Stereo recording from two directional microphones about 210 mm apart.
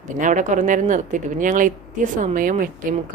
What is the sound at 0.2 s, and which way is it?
A woman's voice, 35° right (ahead or behind).